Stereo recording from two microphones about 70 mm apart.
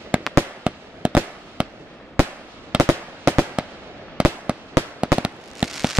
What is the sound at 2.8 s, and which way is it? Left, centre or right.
Fireworks, right.